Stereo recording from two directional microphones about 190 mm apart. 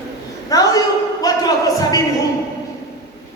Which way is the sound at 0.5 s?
20° left (ahead or behind).